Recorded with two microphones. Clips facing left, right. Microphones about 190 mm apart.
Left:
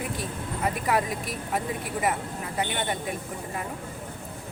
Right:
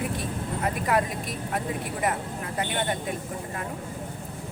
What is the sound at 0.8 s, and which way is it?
Speech, centre (ahead or behind).